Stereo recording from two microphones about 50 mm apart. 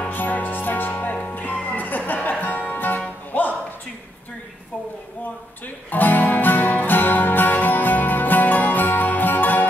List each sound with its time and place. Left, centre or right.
0.1 s music: left
5.9 s music: left